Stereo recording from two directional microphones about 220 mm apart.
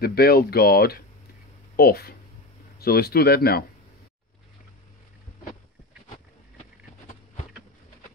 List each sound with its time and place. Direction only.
0.0 s speech: 45° left (ahead or behind)